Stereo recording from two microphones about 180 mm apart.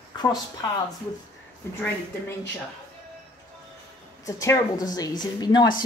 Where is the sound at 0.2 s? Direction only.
20° left (ahead or behind).